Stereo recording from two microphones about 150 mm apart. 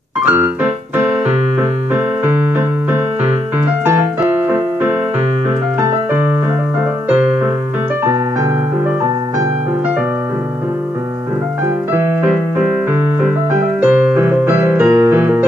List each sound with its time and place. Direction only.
0.2 s music: 10° right (ahead or behind)
2.2 s keyboard: 15° right (ahead or behind)
3.6 s piano: 10° right (ahead or behind)
8.0 s music: 15° right (ahead or behind)
11.9 s piano: 10° right (ahead or behind)
13.7 s piano: 10° right (ahead or behind)
14.9 s music: 25° right (ahead or behind)
15.1 s piano: 10° right (ahead or behind)